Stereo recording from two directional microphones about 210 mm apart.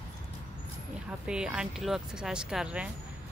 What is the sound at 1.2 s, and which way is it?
Speech, 5° right (ahead or behind).